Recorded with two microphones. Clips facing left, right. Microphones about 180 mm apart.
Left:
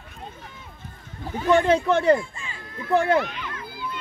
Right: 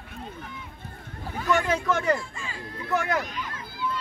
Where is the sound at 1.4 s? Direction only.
30° left (ahead or behind).